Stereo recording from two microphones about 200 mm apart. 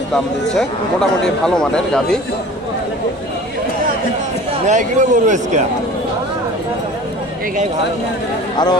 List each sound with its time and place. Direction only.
0.1 s speech: centre (ahead or behind)
4.6 s a man's voice: 40° right (ahead or behind)